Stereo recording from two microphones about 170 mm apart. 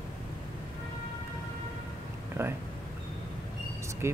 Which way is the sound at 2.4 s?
20° right (ahead or behind).